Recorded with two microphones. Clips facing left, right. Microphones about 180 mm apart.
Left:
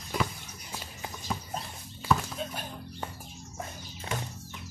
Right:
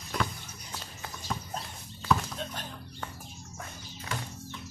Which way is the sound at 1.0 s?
10° left (ahead or behind).